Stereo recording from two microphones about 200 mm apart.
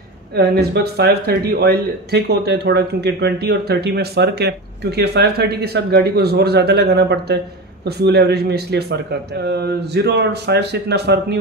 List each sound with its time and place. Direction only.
0.3 s speech: 55° right (ahead or behind)